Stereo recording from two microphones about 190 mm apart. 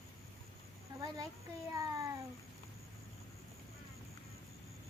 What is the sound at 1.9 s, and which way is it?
Speech, 20° right (ahead or behind).